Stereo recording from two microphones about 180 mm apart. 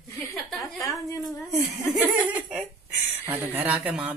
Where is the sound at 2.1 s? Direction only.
10° right (ahead or behind).